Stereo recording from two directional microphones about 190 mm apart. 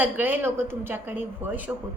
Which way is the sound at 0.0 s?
10° right (ahead or behind).